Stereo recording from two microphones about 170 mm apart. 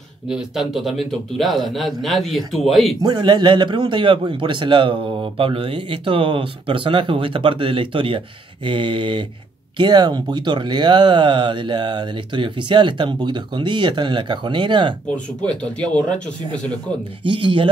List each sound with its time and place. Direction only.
0.3 s a man's voice: centre (ahead or behind)
3.0 s a man's voice: 25° right (ahead or behind)
15.4 s speech: 5° left (ahead or behind)
17.3 s a man's voice: 30° right (ahead or behind)